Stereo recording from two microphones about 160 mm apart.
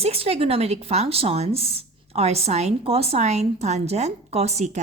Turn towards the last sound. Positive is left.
turn(degrees=-45)  # may be behind; listen again after turning